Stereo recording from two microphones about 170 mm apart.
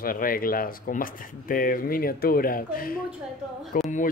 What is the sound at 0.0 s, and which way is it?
Speech, 55° left (ahead or behind).